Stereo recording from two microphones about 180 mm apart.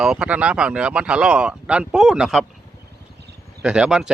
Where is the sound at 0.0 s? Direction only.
5° right (ahead or behind).